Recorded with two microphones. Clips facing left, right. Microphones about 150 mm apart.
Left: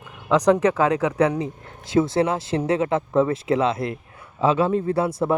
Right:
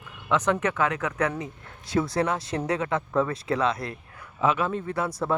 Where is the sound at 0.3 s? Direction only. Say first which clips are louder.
Left 7 dB; 35° left (ahead or behind).